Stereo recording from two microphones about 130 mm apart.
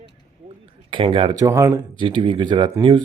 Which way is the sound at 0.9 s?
45° right (ahead or behind).